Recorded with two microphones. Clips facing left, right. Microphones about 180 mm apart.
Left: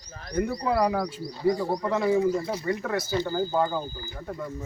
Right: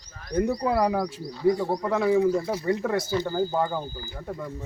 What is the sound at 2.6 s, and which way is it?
Speech, 20° right (ahead or behind).